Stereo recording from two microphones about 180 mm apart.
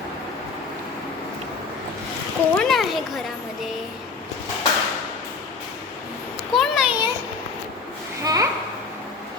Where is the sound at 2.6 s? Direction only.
Centre (ahead or behind).